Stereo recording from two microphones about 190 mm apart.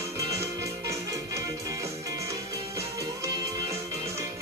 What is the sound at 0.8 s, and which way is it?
Music, 15° right (ahead or behind).